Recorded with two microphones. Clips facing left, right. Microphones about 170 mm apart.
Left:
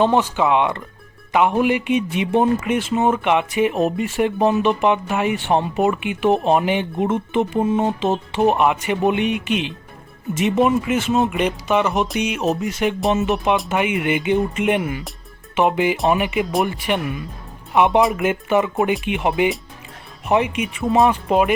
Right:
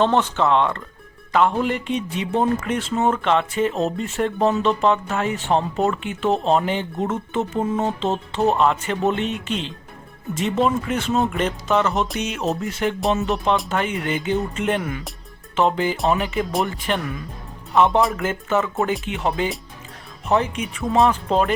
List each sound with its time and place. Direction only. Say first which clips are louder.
0.0 s speech: left 2 dB; 10° left (ahead or behind)
20.9 s speech: left 1 dB; centre (ahead or behind)
21.2 s speech: left 3 dB; 10° left (ahead or behind)